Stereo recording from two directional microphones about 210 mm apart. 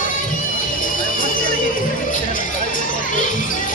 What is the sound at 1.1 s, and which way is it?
Music, 40° left (ahead or behind).